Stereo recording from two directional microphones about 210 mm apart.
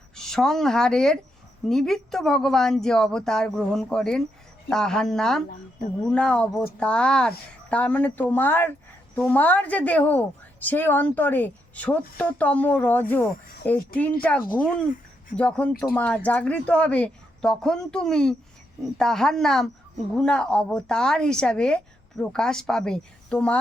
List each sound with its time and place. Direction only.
0.2 s a woman's voice: centre (ahead or behind)